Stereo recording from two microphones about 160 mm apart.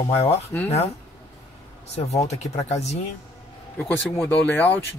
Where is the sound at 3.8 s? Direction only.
10° left (ahead or behind).